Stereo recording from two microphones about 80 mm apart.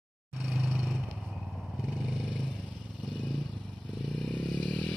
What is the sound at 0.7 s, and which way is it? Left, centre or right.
Vehicle, centre.